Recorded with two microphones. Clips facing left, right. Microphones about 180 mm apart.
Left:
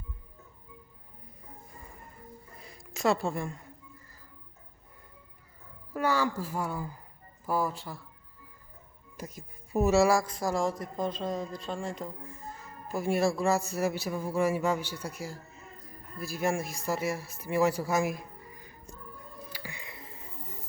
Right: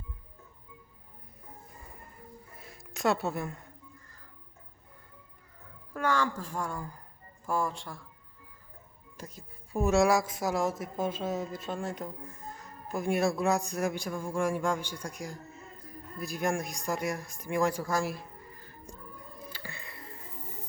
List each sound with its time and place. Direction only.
2.6 s a sound: centre (ahead or behind)
5.9 s a woman's voice: 10° left (ahead or behind)
9.1 s speech: 10° left (ahead or behind)
19.5 s music: 15° left (ahead or behind)